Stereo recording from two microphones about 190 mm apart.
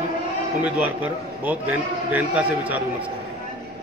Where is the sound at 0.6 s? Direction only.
10° right (ahead or behind).